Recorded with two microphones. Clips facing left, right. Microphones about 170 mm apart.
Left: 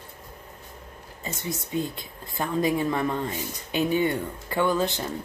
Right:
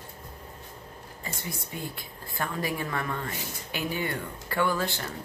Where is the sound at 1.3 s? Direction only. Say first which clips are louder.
Left 6 dB; 20° left (ahead or behind).